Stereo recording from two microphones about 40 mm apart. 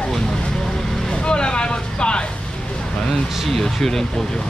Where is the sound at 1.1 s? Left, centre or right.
Left.